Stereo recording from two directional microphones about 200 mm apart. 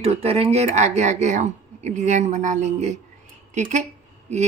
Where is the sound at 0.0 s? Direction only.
30° right (ahead or behind).